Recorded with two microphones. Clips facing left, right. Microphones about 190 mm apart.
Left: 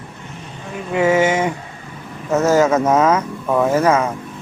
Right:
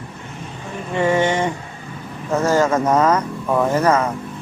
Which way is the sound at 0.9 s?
5° left (ahead or behind).